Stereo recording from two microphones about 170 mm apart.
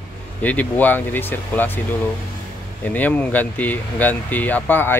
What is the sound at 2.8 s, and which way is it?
Speech, 10° left (ahead or behind).